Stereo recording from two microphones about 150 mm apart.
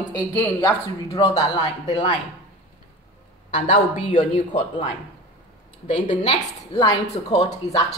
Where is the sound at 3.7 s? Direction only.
35° left (ahead or behind).